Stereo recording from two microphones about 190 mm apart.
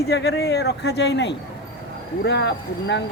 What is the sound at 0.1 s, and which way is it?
Speech, 60° left (ahead or behind).